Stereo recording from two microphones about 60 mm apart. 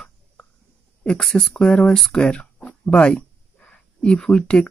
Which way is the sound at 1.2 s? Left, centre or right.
Centre.